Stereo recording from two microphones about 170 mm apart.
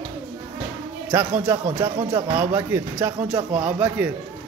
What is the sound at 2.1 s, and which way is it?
A man's voice, 10° right (ahead or behind).